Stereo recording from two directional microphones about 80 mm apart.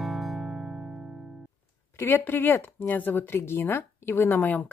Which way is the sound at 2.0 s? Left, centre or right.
Left.